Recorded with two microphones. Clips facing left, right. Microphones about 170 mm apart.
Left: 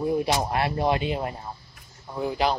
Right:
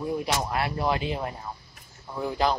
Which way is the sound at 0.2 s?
30° left (ahead or behind).